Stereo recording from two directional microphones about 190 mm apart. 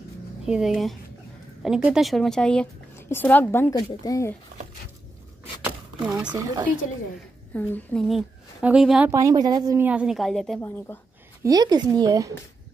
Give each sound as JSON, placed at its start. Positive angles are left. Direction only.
{"t": 0.5, "sound": "a woman's voice", "side_deg": 0}
{"t": 5.6, "sound": "a sound", "side_deg": -5}
{"t": 7.5, "sound": "a woman's voice", "side_deg": 5}
{"t": 9.1, "sound": "speech", "side_deg": -20}
{"t": 9.8, "sound": "a woman's voice", "side_deg": -5}
{"t": 11.4, "sound": "speech", "side_deg": -20}